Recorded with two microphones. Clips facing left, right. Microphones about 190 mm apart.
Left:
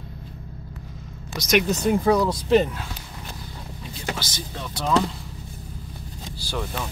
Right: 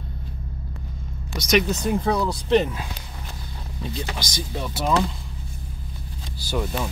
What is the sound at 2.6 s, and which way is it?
Speech, 10° right (ahead or behind).